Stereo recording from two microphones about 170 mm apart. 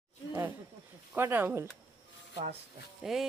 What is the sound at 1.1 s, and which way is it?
Speech, 15° right (ahead or behind).